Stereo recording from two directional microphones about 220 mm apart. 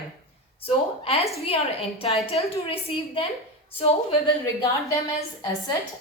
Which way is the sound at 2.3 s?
25° left (ahead or behind).